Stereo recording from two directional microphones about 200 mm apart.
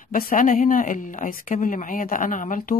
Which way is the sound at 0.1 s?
45° left (ahead or behind).